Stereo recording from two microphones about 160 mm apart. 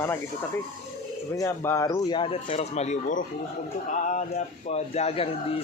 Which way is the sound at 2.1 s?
35° left (ahead or behind).